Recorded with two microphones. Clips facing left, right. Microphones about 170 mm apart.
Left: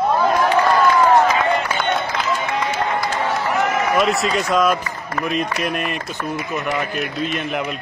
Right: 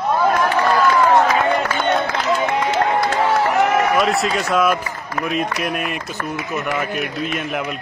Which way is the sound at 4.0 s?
Centre (ahead or behind).